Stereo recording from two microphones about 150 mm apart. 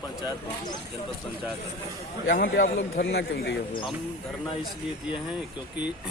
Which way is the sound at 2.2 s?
75° left (ahead or behind).